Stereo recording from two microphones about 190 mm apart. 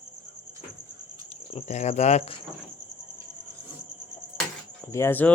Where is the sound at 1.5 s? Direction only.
35° left (ahead or behind).